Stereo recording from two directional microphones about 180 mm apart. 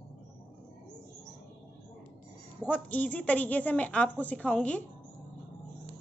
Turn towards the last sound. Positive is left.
turn(degrees=5)  # may be behind; listen again after turning